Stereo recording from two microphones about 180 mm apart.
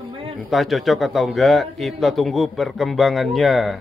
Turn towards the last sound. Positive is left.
turn(degrees=0)  # may be behind; listen again after turning